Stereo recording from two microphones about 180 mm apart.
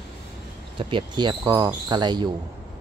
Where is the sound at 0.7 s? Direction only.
25° right (ahead or behind).